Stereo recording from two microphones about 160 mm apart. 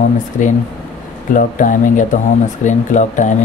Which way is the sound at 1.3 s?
55° left (ahead or behind).